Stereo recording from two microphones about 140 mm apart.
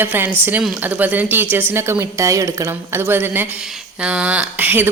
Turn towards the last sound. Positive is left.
turn(degrees=-15)  # may be behind; listen again after turning